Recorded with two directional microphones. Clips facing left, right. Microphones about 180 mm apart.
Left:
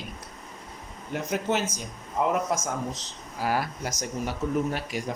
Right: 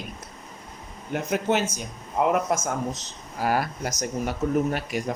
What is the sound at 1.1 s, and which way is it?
Speech, 60° right (ahead or behind).